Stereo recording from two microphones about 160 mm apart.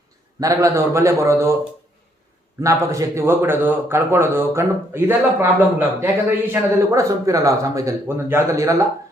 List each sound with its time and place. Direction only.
0.3 s speech: 20° right (ahead or behind)
2.6 s a man's voice: 20° right (ahead or behind)